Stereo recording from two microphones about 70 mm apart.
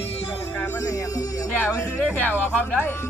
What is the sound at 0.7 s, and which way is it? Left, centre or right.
Speech, left.